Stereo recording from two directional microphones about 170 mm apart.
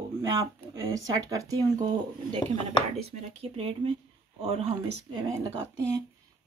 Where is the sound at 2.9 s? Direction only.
35° right (ahead or behind).